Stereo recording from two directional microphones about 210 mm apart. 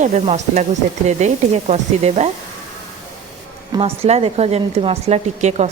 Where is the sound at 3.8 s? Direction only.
30° right (ahead or behind).